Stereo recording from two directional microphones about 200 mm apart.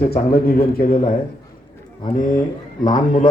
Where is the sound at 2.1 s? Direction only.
40° left (ahead or behind).